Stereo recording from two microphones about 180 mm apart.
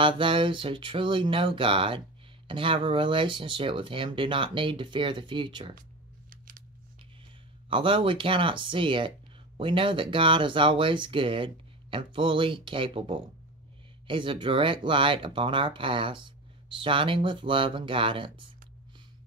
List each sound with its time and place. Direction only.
0.0 s speech: 30° right (ahead or behind)
6.3 s scissors: 50° right (ahead or behind)
7.7 s speech: 30° right (ahead or behind)